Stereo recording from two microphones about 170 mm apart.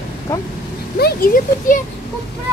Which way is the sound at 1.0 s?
55° left (ahead or behind).